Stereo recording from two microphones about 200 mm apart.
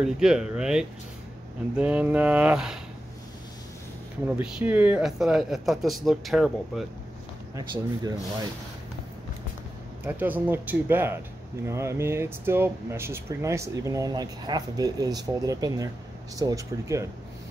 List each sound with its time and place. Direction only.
0.0 s speech: 5° right (ahead or behind)
4.4 s speech: 5° right (ahead or behind)
7.5 s speech: 20° right (ahead or behind)
10.0 s speech: 10° right (ahead or behind)